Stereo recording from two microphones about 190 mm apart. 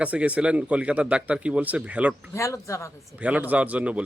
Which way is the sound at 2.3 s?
15° left (ahead or behind).